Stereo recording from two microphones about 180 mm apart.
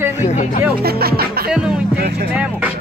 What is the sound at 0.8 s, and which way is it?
Speech, 60° right (ahead or behind).